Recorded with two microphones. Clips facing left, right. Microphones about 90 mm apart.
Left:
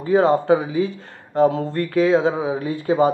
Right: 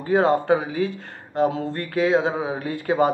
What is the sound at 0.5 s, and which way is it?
Speech, 40° right (ahead or behind).